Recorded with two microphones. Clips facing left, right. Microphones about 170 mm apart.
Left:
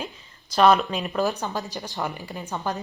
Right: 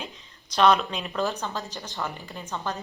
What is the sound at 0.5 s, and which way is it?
Speech, 5° left (ahead or behind).